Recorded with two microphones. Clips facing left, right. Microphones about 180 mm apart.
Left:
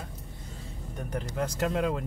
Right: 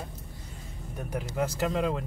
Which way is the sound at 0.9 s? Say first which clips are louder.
Right 1 dB; 5° right (ahead or behind).